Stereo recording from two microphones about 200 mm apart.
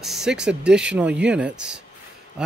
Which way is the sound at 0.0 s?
Centre (ahead or behind).